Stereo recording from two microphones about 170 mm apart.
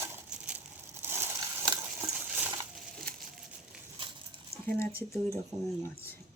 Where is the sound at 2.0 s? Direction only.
10° right (ahead or behind).